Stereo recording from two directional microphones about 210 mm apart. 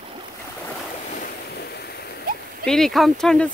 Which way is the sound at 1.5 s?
50° left (ahead or behind).